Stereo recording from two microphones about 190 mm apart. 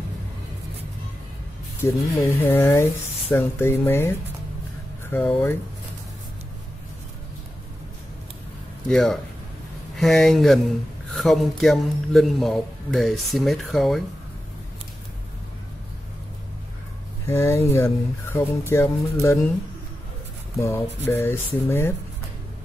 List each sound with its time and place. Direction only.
1.8 s speech: 15° left (ahead or behind)
5.1 s speech: 10° left (ahead or behind)
8.8 s a man's voice: centre (ahead or behind)
17.3 s speech: 15° left (ahead or behind)
20.6 s speech: 15° left (ahead or behind)